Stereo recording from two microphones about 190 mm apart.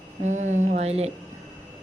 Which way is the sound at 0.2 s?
40° right (ahead or behind).